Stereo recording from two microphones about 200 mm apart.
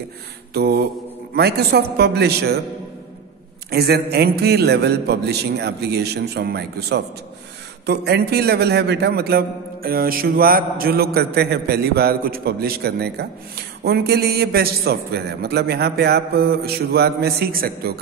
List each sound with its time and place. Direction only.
0.6 s a man's voice: 50° right (ahead or behind)
3.7 s a man's voice: 50° right (ahead or behind)